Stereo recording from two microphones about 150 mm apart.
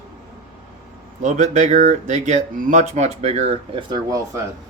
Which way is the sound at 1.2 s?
55° right (ahead or behind).